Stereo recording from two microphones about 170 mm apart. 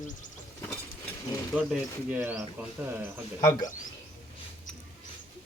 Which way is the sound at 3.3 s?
25° left (ahead or behind).